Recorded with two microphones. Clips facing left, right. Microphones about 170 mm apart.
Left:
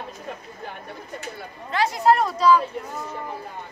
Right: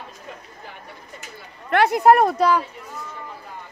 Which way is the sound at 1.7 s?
60° right (ahead or behind).